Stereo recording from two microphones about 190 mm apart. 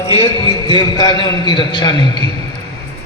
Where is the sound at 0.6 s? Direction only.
20° left (ahead or behind).